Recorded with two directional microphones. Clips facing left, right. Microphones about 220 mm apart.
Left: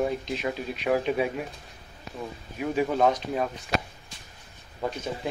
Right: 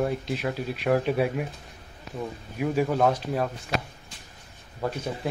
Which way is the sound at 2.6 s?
5° right (ahead or behind).